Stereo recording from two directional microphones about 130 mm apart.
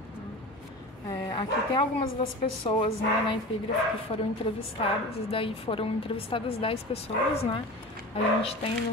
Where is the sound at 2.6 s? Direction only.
45° left (ahead or behind).